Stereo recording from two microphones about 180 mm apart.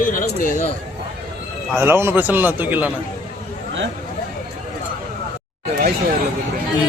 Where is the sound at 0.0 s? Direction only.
50° left (ahead or behind).